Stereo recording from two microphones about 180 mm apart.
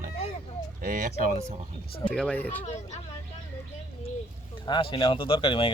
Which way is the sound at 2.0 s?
5° left (ahead or behind).